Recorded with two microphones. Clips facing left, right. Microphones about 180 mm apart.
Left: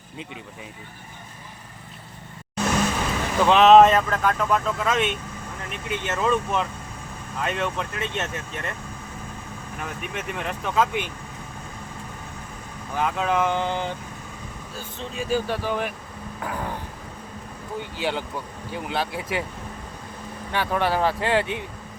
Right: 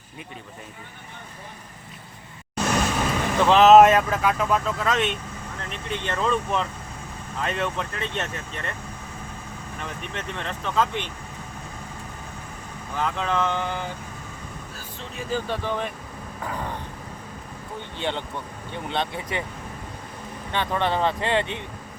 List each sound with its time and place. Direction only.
3.3 s speech: centre (ahead or behind)
10.0 s speech: 10° left (ahead or behind)
13.0 s speech: 10° left (ahead or behind)
18.0 s speech: 5° left (ahead or behind)
20.5 s speech: 5° left (ahead or behind)